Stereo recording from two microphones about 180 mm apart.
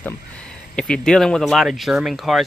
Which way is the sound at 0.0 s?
5° left (ahead or behind).